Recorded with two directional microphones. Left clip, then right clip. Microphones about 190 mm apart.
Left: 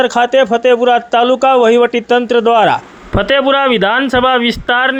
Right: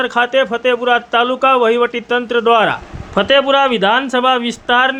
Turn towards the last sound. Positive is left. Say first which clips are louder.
# left 1 dB
turn(degrees=25)  # may be behind; listen again after turning